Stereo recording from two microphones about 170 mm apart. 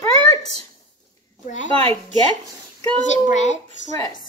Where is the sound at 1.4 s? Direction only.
45° left (ahead or behind).